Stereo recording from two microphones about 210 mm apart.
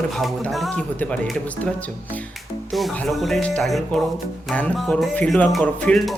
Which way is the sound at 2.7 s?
Centre (ahead or behind).